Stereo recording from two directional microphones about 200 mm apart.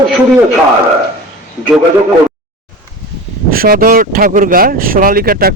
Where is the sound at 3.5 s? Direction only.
45° right (ahead or behind).